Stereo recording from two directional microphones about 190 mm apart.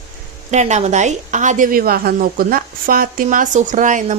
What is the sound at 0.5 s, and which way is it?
A woman's voice, 35° right (ahead or behind).